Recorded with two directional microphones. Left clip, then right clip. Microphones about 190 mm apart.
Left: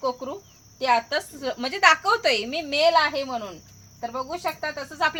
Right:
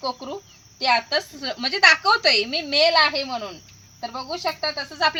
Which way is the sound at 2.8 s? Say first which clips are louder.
Right 2 dB; 25° left (ahead or behind).